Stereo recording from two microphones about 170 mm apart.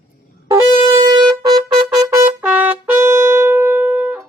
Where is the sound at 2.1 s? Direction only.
15° right (ahead or behind).